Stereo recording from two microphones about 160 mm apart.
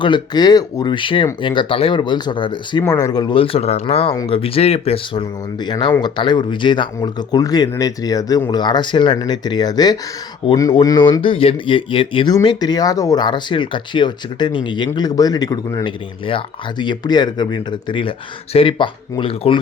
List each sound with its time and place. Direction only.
0.0 s speech: 30° left (ahead or behind)
5.6 s speech: 25° left (ahead or behind)